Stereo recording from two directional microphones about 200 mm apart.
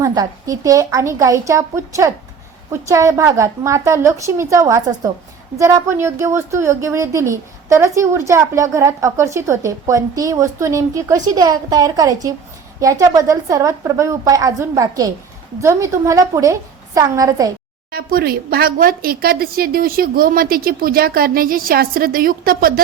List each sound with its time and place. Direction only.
0.0 s a woman's voice: 15° right (ahead or behind)
17.9 s a woman's voice: 50° right (ahead or behind)